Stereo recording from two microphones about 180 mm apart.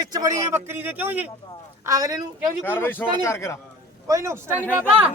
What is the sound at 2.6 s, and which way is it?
Speech, 10° left (ahead or behind).